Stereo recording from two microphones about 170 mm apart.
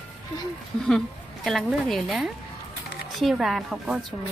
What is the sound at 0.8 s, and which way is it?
Speech, 5° left (ahead or behind).